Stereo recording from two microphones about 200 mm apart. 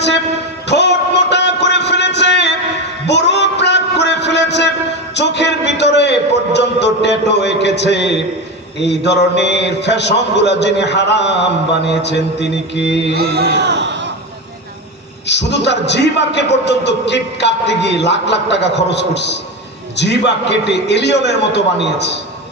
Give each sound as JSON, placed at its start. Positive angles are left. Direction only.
{"t": 0.7, "sound": "a sound", "side_deg": 60}
{"t": 8.8, "sound": "a man's voice", "side_deg": 60}
{"t": 13.1, "sound": "speech", "side_deg": -55}
{"t": 15.3, "sound": "a man's voice", "side_deg": 60}